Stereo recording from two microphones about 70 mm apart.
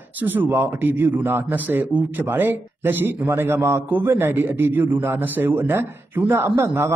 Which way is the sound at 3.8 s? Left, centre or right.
Right.